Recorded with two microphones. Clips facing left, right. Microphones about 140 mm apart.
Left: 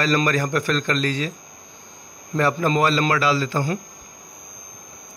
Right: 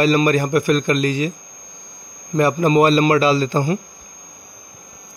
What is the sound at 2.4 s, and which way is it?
A man's voice, 15° right (ahead or behind).